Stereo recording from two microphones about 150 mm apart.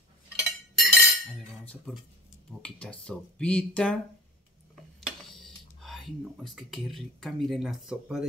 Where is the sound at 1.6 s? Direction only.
10° left (ahead or behind).